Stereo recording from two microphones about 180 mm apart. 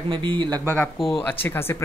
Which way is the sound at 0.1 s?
25° right (ahead or behind).